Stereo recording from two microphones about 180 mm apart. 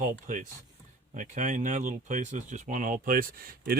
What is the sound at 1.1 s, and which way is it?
Speech, 45° right (ahead or behind).